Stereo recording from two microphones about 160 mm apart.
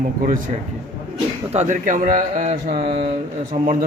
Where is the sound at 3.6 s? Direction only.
60° right (ahead or behind).